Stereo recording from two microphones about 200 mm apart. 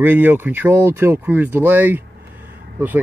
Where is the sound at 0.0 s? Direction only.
10° right (ahead or behind).